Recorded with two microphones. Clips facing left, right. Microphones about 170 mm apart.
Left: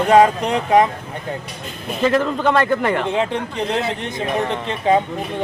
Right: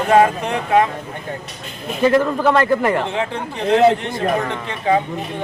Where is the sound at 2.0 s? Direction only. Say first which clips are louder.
Right 2 dB; 5° right (ahead or behind).